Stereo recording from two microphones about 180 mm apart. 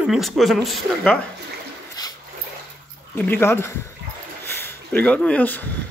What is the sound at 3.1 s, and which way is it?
Speech, 10° left (ahead or behind).